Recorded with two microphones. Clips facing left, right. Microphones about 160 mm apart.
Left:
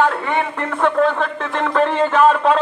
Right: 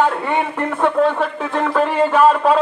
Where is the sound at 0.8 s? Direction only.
10° right (ahead or behind).